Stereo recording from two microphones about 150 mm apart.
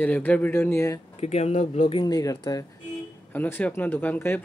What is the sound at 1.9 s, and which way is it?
Speech, 30° left (ahead or behind).